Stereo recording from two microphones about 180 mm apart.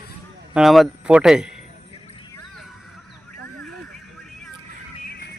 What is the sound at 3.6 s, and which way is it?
Music, 5° left (ahead or behind).